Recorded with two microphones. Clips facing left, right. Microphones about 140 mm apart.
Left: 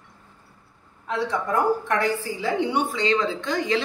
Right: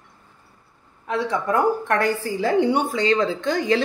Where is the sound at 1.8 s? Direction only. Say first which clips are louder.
Right 2 dB; 50° right (ahead or behind).